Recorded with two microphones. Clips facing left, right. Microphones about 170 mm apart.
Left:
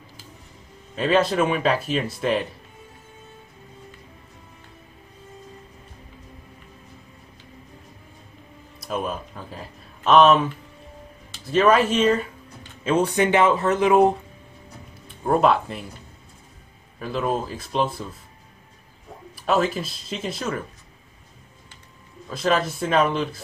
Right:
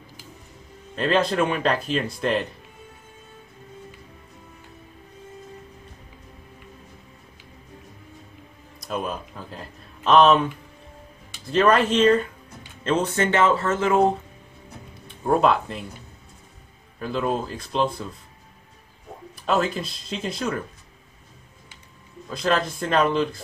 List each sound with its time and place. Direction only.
0.9 s speech: 5° left (ahead or behind)
8.7 s speech: 5° left (ahead or behind)
15.0 s speech: centre (ahead or behind)
17.0 s speech: centre (ahead or behind)
19.3 s speech: 5° left (ahead or behind)
22.3 s speech: 5° left (ahead or behind)